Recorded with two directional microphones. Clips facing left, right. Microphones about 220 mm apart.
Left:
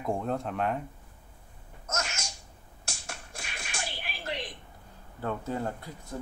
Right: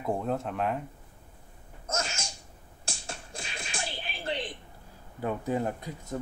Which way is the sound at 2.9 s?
30° right (ahead or behind).